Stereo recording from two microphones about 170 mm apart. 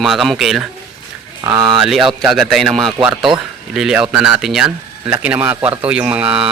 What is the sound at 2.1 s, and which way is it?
Speech, centre (ahead or behind).